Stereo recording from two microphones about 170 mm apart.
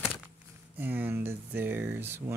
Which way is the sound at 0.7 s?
10° right (ahead or behind).